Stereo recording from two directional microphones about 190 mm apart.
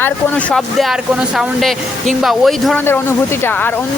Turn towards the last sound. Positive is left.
turn(degrees=10)  # may be behind; listen again after turning